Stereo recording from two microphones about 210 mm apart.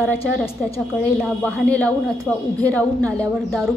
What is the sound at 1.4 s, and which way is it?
A man's voice, 5° left (ahead or behind).